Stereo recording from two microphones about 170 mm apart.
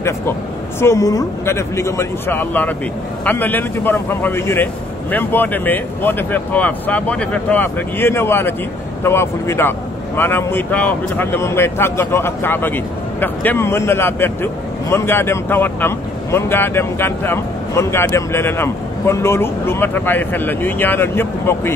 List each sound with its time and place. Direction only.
0.7 s speech: 15° left (ahead or behind)